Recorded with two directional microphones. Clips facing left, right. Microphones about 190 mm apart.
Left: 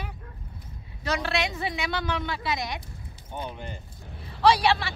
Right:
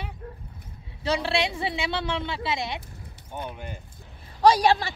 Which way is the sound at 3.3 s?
10° right (ahead or behind).